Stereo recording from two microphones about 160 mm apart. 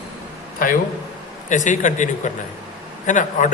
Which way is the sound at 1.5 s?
50° left (ahead or behind).